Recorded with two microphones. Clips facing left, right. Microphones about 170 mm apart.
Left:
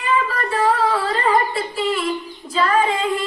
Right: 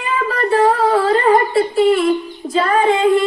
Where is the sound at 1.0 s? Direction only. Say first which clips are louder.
Right 6 dB; 45° right (ahead or behind).